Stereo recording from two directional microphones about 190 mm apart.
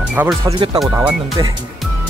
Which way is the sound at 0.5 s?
25° right (ahead or behind).